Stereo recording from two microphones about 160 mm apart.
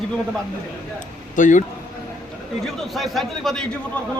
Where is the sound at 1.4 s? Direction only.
50° left (ahead or behind).